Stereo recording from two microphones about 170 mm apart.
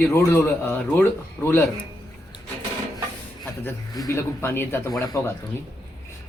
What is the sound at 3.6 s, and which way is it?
Speech, 20° left (ahead or behind).